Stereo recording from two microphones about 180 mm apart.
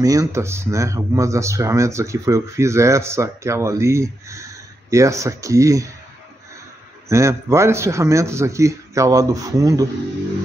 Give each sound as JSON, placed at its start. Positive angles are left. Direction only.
{"t": 0.0, "sound": "speech", "side_deg": -20}
{"t": 7.1, "sound": "speech", "side_deg": -15}